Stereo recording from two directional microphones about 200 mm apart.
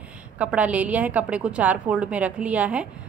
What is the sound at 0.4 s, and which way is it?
A woman's voice, 5° right (ahead or behind).